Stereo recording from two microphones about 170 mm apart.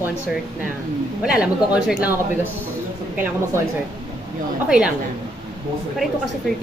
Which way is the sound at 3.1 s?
10° right (ahead or behind).